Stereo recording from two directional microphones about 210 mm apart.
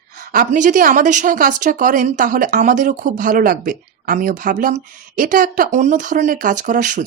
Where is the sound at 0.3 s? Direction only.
40° right (ahead or behind).